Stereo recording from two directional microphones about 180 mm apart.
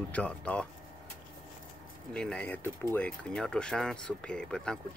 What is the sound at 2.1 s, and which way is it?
Speech, 5° left (ahead or behind).